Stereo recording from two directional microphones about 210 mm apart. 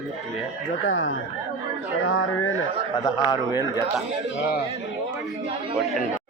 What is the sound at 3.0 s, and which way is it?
Speech, 20° left (ahead or behind).